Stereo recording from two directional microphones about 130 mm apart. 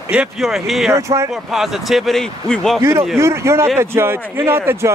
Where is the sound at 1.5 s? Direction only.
Centre (ahead or behind).